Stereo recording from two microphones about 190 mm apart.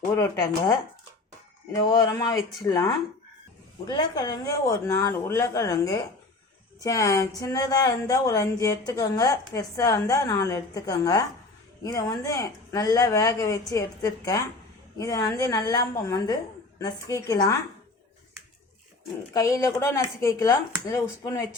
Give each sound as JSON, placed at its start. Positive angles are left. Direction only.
{"t": 0.1, "sound": "speech", "side_deg": 15}
{"t": 1.7, "sound": "speech", "side_deg": 20}
{"t": 19.3, "sound": "speech", "side_deg": 15}